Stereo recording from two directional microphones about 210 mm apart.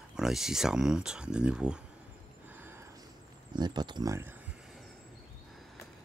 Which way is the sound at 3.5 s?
20° right (ahead or behind).